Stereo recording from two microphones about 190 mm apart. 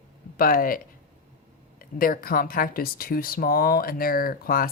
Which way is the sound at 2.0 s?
50° left (ahead or behind).